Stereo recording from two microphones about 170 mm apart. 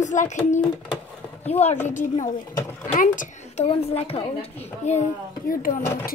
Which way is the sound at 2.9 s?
50° left (ahead or behind).